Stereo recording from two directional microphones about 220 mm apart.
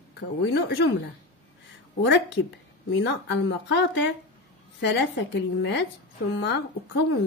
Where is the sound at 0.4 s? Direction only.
50° left (ahead or behind).